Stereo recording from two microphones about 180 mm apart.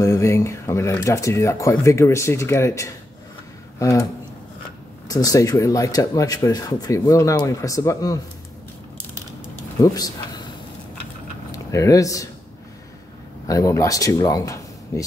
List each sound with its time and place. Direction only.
0.0 s speech: 15° left (ahead or behind)
9.8 s speech: 20° left (ahead or behind)
11.5 s speech: 20° left (ahead or behind)
13.5 s speech: 15° left (ahead or behind)